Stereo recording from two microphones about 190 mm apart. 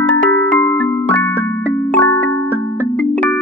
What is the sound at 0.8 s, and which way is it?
Keyboard, 5° left (ahead or behind).